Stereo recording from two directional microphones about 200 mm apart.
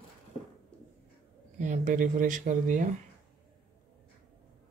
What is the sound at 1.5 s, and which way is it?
Speech, 35° right (ahead or behind).